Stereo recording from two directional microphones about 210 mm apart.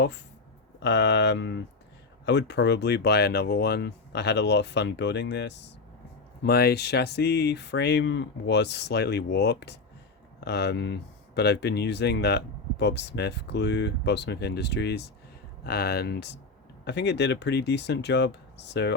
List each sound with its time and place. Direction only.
0.8 s speech: 55° left (ahead or behind)